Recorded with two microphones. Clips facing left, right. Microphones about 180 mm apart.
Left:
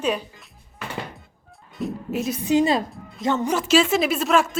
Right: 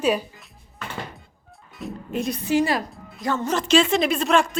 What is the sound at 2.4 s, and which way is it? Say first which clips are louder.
A woman's voice: left 3 dB; 20° left (ahead or behind).